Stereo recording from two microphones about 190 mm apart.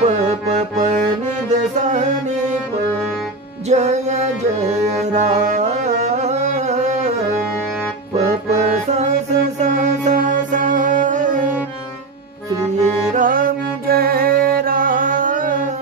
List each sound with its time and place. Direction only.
0.0 s accordion: 40° right (ahead or behind)
1.5 s music: 40° right (ahead or behind)
3.6 s music: 35° right (ahead or behind)
8.2 s accordion: 35° right (ahead or behind)
9.6 s music: 40° right (ahead or behind)
13.1 s music: 45° right (ahead or behind)